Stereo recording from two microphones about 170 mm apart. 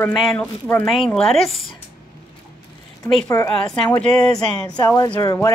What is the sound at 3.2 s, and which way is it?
Speech, 15° left (ahead or behind).